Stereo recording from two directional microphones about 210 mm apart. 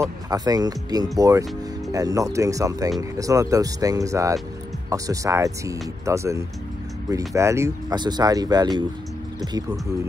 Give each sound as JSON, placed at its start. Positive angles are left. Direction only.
{"t": 0.0, "sound": "speech", "side_deg": -15}